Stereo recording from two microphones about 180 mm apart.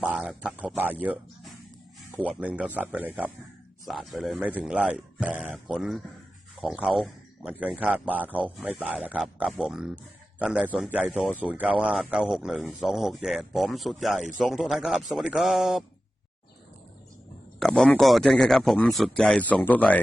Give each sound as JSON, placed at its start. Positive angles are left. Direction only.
{"t": 0.0, "sound": "a man's voice", "side_deg": -5}
{"t": 17.6, "sound": "speech", "side_deg": 5}